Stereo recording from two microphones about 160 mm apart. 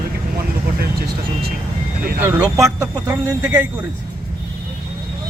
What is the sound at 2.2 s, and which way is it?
Speech, 20° right (ahead or behind).